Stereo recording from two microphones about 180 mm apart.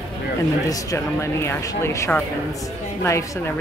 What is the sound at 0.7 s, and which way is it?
A woman's voice, 15° left (ahead or behind).